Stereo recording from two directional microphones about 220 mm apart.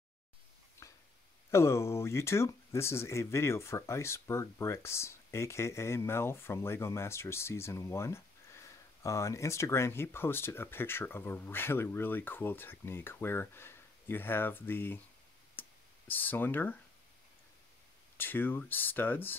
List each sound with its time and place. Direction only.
0.8 s a sound: 15° left (ahead or behind)
1.5 s speech: 10° left (ahead or behind)
15.6 s clicking: 10° left (ahead or behind)
16.1 s speech: 10° left (ahead or behind)
18.1 s speech: 10° left (ahead or behind)